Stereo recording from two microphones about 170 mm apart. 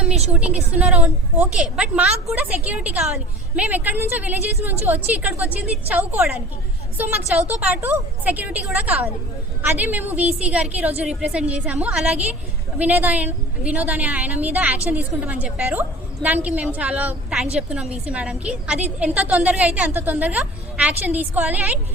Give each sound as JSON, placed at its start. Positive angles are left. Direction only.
{"t": 0.3, "sound": "a woman's voice", "side_deg": -5}